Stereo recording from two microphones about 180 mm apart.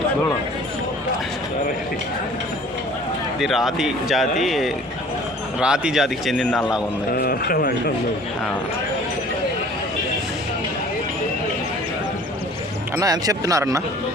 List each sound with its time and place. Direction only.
3.4 s speech: centre (ahead or behind)
7.1 s speech: 55° left (ahead or behind)
13.0 s speech: 20° right (ahead or behind)